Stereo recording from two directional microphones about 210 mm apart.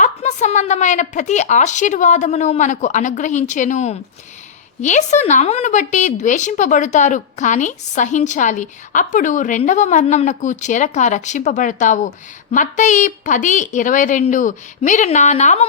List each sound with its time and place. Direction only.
0.0 s a woman's voice: 35° left (ahead or behind)